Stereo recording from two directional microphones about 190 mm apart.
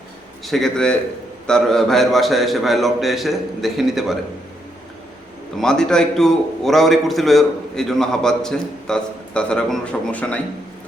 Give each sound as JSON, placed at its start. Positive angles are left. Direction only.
{"t": 0.4, "sound": "a man's voice", "side_deg": 0}
{"t": 5.5, "sound": "a man's voice", "side_deg": 5}